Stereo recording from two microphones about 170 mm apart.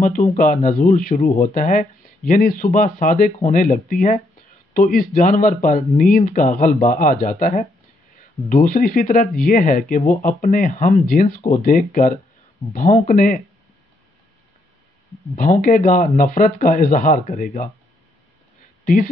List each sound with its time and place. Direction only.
0.0 s speech: 50° left (ahead or behind)
15.3 s speech: 50° left (ahead or behind)